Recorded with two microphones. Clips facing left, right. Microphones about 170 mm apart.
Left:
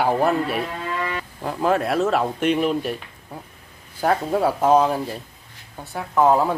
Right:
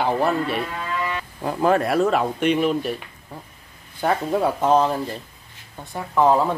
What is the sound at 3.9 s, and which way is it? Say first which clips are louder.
Speech: left 1 dB; 5° left (ahead or behind).